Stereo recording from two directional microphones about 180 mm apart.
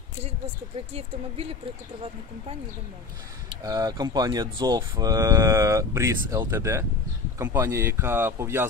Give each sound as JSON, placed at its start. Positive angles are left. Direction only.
{"t": 0.7, "sound": "speech", "side_deg": -35}
{"t": 3.4, "sound": "speech", "side_deg": -20}